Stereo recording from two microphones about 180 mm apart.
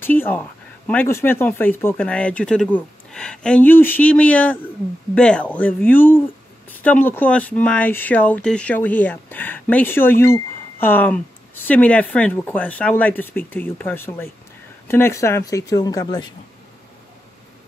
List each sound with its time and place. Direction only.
0.0 s speech: 10° left (ahead or behind)